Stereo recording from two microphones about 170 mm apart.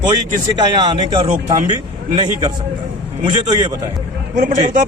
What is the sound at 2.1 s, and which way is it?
A man's voice, 30° right (ahead or behind).